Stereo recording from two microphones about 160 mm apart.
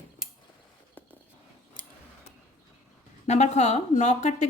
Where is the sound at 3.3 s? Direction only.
45° left (ahead or behind).